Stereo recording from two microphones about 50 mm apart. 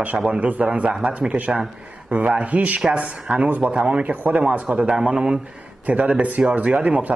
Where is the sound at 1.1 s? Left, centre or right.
Right.